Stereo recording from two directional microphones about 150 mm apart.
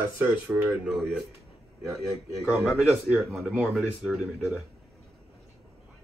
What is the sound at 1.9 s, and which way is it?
Speech, 20° right (ahead or behind).